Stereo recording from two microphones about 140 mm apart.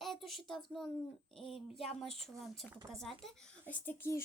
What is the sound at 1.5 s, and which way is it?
Speech, 45° left (ahead or behind).